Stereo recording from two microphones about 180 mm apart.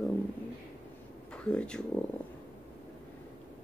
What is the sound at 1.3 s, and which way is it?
Speech, 5° left (ahead or behind).